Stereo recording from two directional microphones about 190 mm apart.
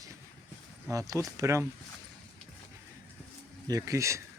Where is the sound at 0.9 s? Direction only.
15° right (ahead or behind).